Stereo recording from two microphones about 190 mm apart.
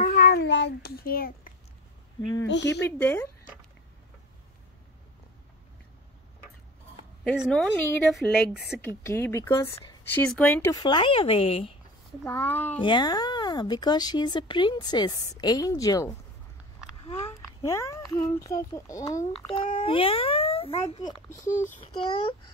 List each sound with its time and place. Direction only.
0.0 s a sound: 45° left (ahead or behind)
2.4 s speech: 65° left (ahead or behind)
2.8 s speech: 10° left (ahead or behind)
7.3 s a woman's voice: centre (ahead or behind)
8.8 s speech: 15° left (ahead or behind)
10.7 s a child's voice: 25° left (ahead or behind)
12.3 s speech: 10° left (ahead or behind)
12.8 s a child's voice: 25° left (ahead or behind)
17.3 s a child's voice: 15° left (ahead or behind); by 21.0 s 35° left (ahead or behind)
21.0 s a child's voice: 20° left (ahead or behind)